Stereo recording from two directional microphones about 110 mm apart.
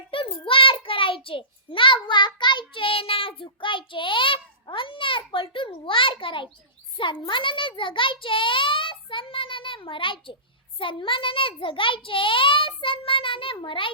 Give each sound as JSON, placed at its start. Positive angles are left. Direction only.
{"t": 0.1, "sound": "child singing", "side_deg": 55}
{"t": 6.9, "sound": "a child's voice", "side_deg": 50}